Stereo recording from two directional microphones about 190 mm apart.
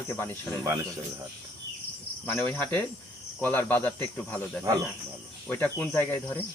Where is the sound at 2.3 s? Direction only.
10° left (ahead or behind).